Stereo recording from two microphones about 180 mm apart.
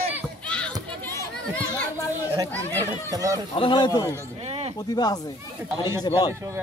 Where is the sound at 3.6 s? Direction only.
25° left (ahead or behind).